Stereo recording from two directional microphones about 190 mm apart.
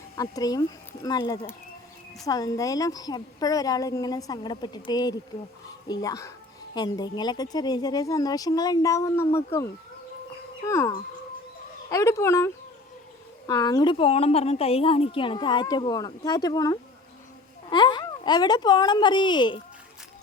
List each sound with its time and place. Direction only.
0.2 s a woman's voice: 20° left (ahead or behind)
10.7 s speech: 15° left (ahead or behind)
13.5 s a woman's voice: 20° left (ahead or behind)